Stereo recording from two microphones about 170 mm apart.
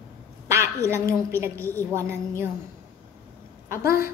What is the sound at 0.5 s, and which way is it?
A woman's voice, 15° right (ahead or behind).